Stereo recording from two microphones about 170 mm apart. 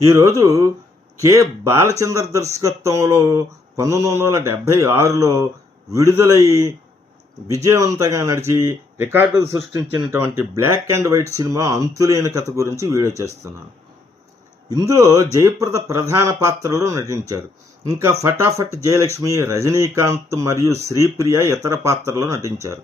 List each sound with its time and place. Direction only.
0.0 s speech: 20° right (ahead or behind)
7.4 s speech: 20° right (ahead or behind)
14.7 s speech: 20° right (ahead or behind)